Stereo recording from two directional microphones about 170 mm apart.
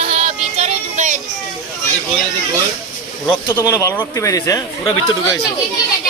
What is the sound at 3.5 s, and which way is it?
Speech, 15° left (ahead or behind).